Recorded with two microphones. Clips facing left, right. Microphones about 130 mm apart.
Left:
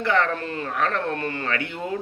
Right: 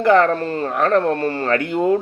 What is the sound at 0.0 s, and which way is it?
A man's voice, 45° right (ahead or behind).